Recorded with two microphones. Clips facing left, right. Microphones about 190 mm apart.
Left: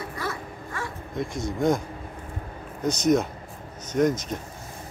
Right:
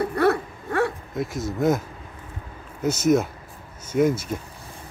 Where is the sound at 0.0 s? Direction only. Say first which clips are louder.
Right 12 dB; 65° right (ahead or behind).